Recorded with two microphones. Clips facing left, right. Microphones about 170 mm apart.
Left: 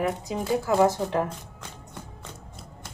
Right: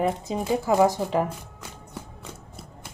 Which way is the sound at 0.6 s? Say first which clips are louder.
Right 1 dB; 15° right (ahead or behind).